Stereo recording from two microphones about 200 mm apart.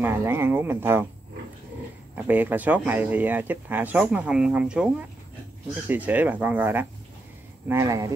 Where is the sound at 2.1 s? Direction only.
10° right (ahead or behind).